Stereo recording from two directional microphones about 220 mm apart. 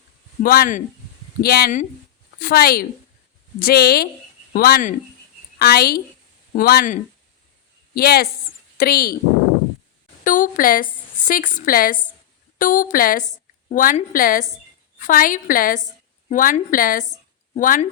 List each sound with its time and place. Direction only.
0.4 s a woman's voice: 40° left (ahead or behind)
10.2 s a woman's voice: 35° left (ahead or behind)